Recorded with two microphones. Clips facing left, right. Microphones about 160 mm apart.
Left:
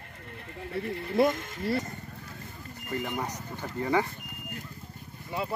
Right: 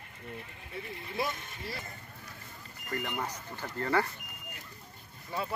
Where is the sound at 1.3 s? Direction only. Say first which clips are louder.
Left 10 dB; 90° left.